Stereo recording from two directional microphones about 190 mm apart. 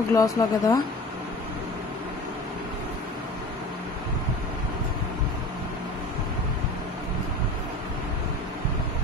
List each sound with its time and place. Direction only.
0.1 s speech: 15° left (ahead or behind)